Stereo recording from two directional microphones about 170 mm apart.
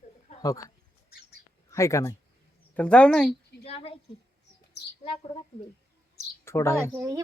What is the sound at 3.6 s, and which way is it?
Speech, 35° left (ahead or behind).